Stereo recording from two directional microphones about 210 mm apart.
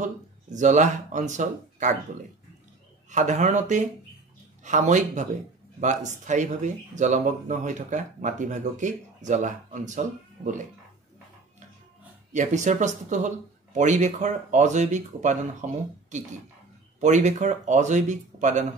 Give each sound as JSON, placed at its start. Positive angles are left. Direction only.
{"t": 0.0, "sound": "speech", "side_deg": -35}
{"t": 3.1, "sound": "speech", "side_deg": -35}
{"t": 12.3, "sound": "speech", "side_deg": -35}